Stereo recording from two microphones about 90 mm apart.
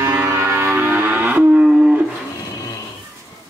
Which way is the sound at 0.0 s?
30° right (ahead or behind).